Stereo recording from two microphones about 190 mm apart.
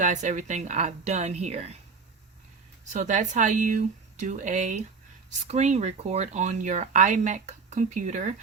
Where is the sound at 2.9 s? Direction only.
40° right (ahead or behind).